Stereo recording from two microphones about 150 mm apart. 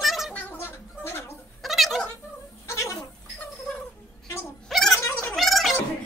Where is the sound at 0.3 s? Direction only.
10° left (ahead or behind).